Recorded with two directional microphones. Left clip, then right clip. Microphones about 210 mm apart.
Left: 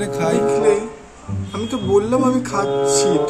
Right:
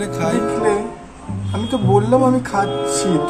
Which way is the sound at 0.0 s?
Centre (ahead or behind).